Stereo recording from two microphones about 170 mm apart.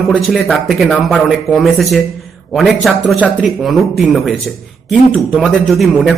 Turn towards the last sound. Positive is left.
turn(degrees=0)  # may be behind; listen again after turning